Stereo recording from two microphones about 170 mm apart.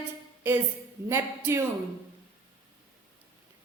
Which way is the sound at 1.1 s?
15° right (ahead or behind).